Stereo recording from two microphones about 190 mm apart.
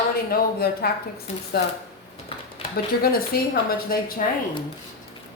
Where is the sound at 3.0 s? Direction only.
50° left (ahead or behind).